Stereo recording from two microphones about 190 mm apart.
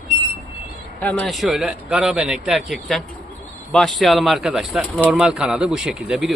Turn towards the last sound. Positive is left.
turn(degrees=0)  # may be behind; listen again after turning